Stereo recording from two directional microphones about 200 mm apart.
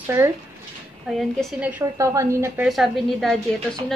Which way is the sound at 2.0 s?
15° right (ahead or behind).